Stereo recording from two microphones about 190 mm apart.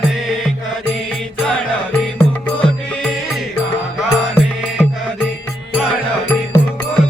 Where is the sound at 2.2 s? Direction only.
5° left (ahead or behind).